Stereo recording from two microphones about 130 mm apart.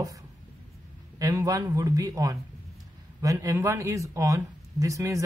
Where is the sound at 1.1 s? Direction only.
25° right (ahead or behind).